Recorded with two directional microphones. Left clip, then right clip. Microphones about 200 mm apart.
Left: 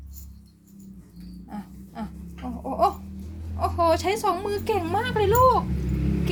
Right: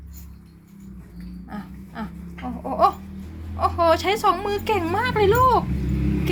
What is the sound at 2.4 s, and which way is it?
Babbling, 5° right (ahead or behind).